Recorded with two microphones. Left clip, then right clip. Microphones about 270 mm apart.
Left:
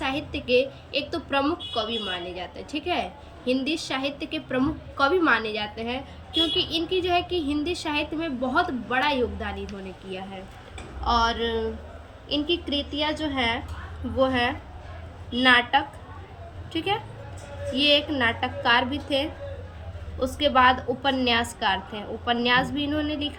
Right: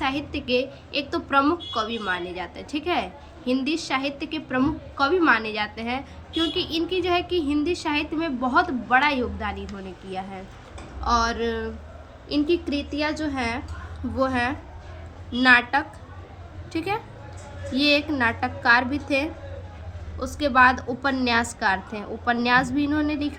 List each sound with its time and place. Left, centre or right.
0.0 s a woman's voice: centre
11.3 s a woman's voice: right
12.9 s a woman's voice: centre